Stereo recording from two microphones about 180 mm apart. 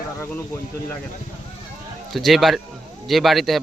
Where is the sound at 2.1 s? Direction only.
Centre (ahead or behind).